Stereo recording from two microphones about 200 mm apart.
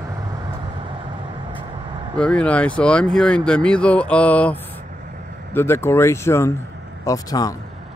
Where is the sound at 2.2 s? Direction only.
5° left (ahead or behind).